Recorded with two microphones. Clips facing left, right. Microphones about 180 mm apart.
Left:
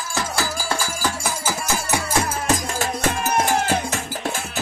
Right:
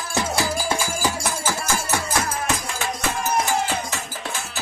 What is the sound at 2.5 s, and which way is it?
Music, 40° left (ahead or behind).